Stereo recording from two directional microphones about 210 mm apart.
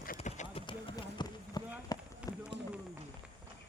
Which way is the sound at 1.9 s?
15° left (ahead or behind).